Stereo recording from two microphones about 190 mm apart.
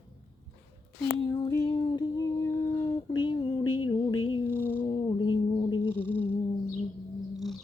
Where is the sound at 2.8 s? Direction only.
25° left (ahead or behind).